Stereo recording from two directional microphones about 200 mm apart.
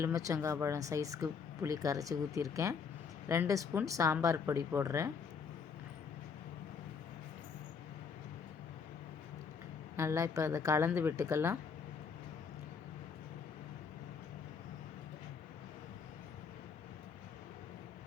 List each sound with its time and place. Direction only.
0.0 s speech: 15° right (ahead or behind)
10.0 s speech: 15° right (ahead or behind)